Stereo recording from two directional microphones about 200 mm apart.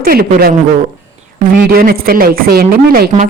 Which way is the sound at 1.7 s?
45° right (ahead or behind).